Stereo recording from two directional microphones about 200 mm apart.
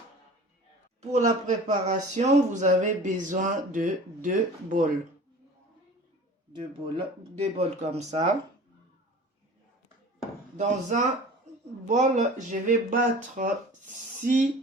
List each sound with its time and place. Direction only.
1.1 s speech: 35° right (ahead or behind)
6.6 s speech: 25° right (ahead or behind)
10.2 s a sound: 35° right (ahead or behind)
11.9 s speech: 35° right (ahead or behind)